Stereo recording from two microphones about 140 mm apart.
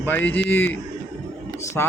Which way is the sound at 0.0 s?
15° left (ahead or behind).